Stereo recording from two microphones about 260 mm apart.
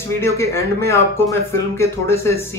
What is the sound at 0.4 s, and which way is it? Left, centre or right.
Speech, centre.